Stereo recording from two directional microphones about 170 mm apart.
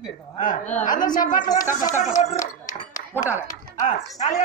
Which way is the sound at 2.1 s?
40° left (ahead or behind).